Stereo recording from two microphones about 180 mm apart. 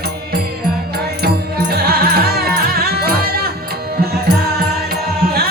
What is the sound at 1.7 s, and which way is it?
Music, 60° right (ahead or behind).